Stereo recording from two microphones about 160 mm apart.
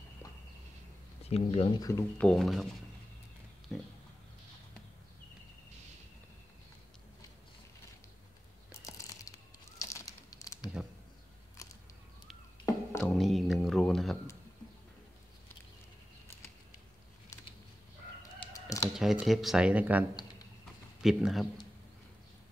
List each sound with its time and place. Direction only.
1.3 s speech: 40° left (ahead or behind)
1.8 s speech: 20° left (ahead or behind)
2.2 s speech: centre (ahead or behind)
3.7 s speech: centre (ahead or behind)
8.8 s ratchet: 20° left (ahead or behind)
9.8 s a sound: 20° left (ahead or behind)
12.6 s whispering: 20° left (ahead or behind)
13.1 s music: centre (ahead or behind)
18.9 s speech: centre (ahead or behind)